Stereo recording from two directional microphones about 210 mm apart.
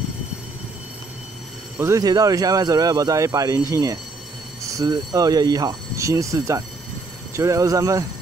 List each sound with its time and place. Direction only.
1.8 s a man's voice: 15° right (ahead or behind)